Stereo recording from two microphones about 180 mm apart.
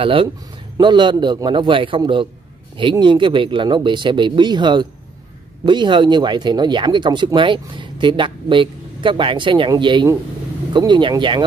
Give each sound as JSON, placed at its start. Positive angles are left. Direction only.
{"t": 0.0, "sound": "speech", "side_deg": -30}